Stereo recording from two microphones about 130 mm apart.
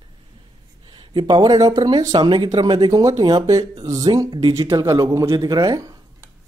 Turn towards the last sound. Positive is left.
turn(degrees=-25)  # may be behind; listen again after turning